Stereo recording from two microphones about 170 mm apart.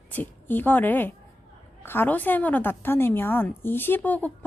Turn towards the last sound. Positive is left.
turn(degrees=10)  # may be behind; listen again after turning